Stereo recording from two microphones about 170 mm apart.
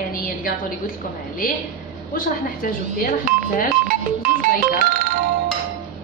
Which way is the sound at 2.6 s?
55° left (ahead or behind).